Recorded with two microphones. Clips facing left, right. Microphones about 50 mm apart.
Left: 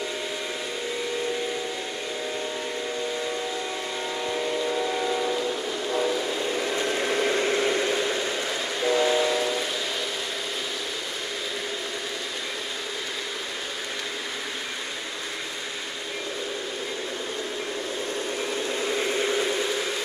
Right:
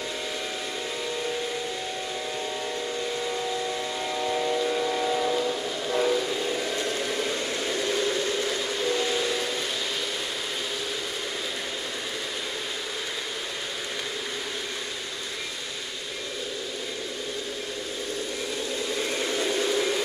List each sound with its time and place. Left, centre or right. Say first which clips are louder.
4.1 s vehicle: right 2 dB; centre
6.2 s train: left 1 dB; centre
6.8 s a sound: left 3 dB; left
18.7 s vehicle: left 3 dB; left; by 20.0 s centre